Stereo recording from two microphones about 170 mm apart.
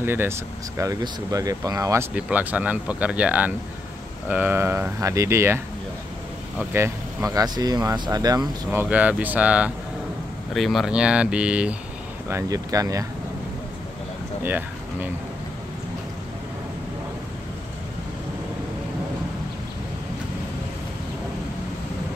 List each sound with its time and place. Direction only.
0.0 s speech: 15° right (ahead or behind)
2.1 s speech: 10° right (ahead or behind)
6.7 s speech: 15° right (ahead or behind)
8.6 s speech: 10° right (ahead or behind)
12.3 s speech: 20° right (ahead or behind)
14.4 s a sound: 10° right (ahead or behind)